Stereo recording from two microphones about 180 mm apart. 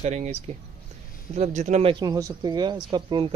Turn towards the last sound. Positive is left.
turn(degrees=-25)  # may be behind; listen again after turning